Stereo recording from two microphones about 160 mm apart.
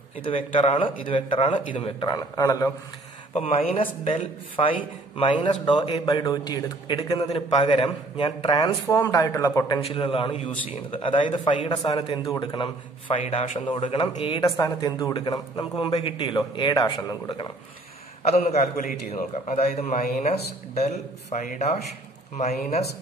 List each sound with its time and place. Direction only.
0.2 s speech: 35° left (ahead or behind)
3.7 s a man's voice: 40° left (ahead or behind)
8.8 s a man's voice: 15° left (ahead or behind)
9.8 s a man's voice: 35° left (ahead or behind)
13.3 s speech: 40° left (ahead or behind)
13.6 s speech: 30° left (ahead or behind)
14.6 s a man's voice: 25° left (ahead or behind)
18.2 s a man's voice: 45° left (ahead or behind)